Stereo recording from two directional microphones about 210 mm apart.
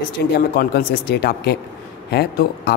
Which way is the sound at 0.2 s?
55° left (ahead or behind).